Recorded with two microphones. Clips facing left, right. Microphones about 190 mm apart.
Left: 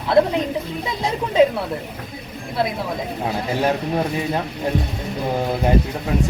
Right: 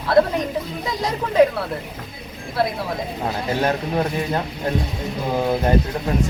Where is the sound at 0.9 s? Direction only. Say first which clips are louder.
Even; 25° left (ahead or behind).